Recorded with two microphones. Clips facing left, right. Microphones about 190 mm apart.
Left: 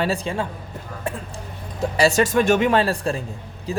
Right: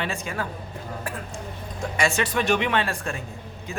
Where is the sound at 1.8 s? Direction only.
35° left (ahead or behind).